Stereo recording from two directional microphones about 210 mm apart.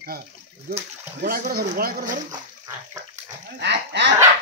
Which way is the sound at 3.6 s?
55° right (ahead or behind).